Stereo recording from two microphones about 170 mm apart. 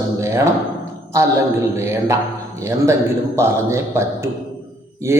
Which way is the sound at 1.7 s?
15° right (ahead or behind).